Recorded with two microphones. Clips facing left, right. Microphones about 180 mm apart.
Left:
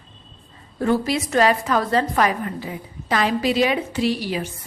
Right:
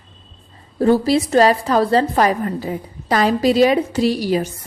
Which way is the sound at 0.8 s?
35° right (ahead or behind).